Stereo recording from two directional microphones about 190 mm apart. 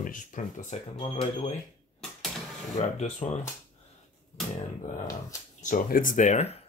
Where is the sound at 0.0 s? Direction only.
45° left (ahead or behind).